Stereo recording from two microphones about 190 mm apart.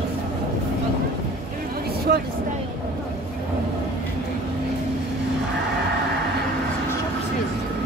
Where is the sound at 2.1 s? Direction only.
55° right (ahead or behind).